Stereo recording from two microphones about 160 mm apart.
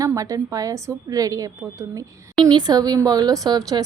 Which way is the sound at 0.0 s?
20° right (ahead or behind).